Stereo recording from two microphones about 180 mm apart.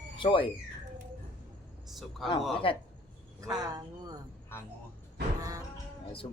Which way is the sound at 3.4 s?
20° right (ahead or behind).